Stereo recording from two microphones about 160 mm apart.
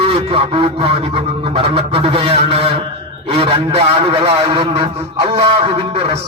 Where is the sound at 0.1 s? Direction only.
35° right (ahead or behind).